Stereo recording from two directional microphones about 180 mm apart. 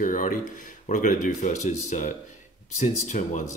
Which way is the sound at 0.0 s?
45° left (ahead or behind).